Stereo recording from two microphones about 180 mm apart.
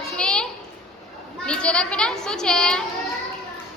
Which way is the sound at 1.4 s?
5° left (ahead or behind).